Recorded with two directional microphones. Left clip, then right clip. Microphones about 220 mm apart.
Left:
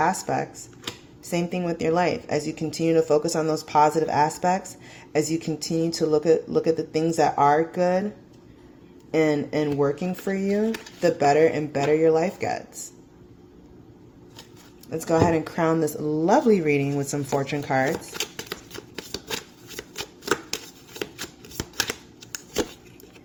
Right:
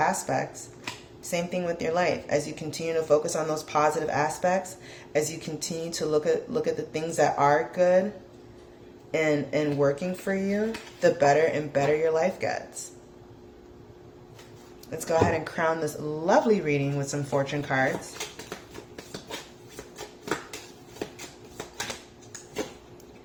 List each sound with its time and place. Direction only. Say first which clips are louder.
0.0 s speech: left 2 dB; 35° left (ahead or behind)
9.1 s speech: left 3 dB; 30° left (ahead or behind)
14.8 s speech: left 3 dB; 35° left (ahead or behind)